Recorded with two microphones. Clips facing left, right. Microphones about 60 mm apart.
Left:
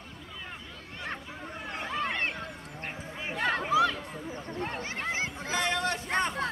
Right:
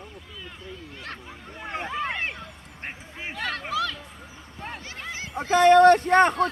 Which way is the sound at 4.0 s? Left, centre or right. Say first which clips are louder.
Left 5 dB; left.